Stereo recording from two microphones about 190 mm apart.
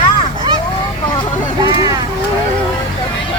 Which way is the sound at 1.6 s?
20° right (ahead or behind).